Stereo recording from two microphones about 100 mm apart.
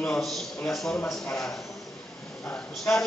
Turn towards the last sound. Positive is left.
turn(degrees=20)  # may be behind; listen again after turning